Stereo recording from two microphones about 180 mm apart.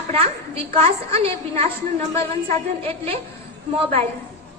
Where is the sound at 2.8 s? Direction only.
30° right (ahead or behind).